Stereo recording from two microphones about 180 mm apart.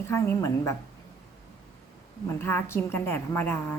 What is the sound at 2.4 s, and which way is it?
A woman's voice, 10° left (ahead or behind).